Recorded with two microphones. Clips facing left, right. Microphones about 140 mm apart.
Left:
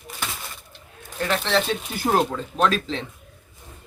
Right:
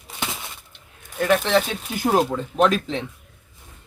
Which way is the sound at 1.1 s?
10° right (ahead or behind).